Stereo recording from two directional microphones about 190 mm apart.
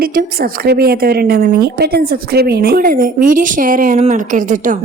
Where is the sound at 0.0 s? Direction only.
55° right (ahead or behind).